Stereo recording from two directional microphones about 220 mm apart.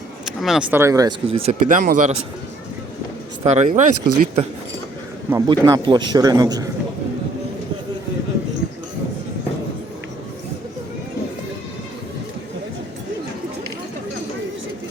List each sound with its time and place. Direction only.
0.3 s speech: centre (ahead or behind)
0.8 s a man's voice: 15° right (ahead or behind)
1.3 s speech: 30° right (ahead or behind)
3.4 s speech: 30° right (ahead or behind)
5.3 s a man's voice: 15° right (ahead or behind)